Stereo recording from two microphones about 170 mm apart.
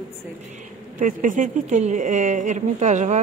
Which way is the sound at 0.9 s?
50° right (ahead or behind).